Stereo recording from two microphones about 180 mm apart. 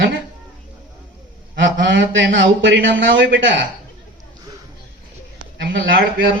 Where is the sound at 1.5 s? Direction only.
90° right.